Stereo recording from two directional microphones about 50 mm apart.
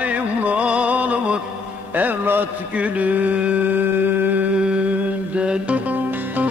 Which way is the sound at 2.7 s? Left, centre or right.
Right.